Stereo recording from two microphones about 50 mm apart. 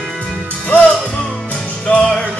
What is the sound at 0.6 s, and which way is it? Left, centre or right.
Music, left.